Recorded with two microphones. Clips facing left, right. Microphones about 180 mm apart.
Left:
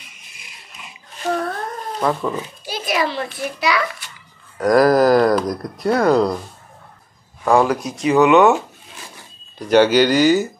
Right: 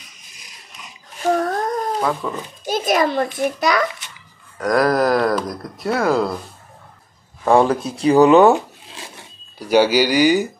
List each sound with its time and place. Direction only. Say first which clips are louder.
0.0 s a sound: left 1 dB; 40° right (ahead or behind)
2.0 s speech: left 1 dB; 5° left (ahead or behind)
2.6 s a child's voice: right 5 dB; 45° right (ahead or behind)
4.6 s speech: left 4 dB; centre (ahead or behind)
7.4 s speech: right 1 dB; 25° right (ahead or behind)
9.6 s speech: left 2 dB; 5° right (ahead or behind)